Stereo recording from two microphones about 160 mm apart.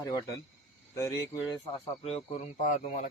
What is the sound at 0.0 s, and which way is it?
Speech, 20° left (ahead or behind).